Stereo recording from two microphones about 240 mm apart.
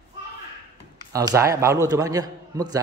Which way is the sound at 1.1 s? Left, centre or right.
Centre.